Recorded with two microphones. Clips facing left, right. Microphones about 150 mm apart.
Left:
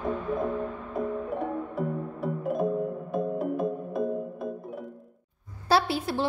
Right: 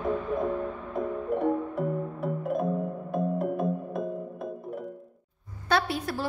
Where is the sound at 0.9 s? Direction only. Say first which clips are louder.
Right 2 dB; centre (ahead or behind).